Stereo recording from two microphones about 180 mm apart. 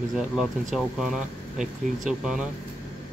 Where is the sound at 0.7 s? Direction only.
Centre (ahead or behind).